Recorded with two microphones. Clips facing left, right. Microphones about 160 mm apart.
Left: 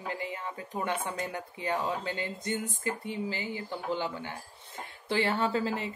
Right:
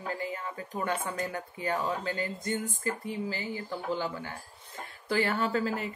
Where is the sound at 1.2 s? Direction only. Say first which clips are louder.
Right 1 dB; 20° left (ahead or behind).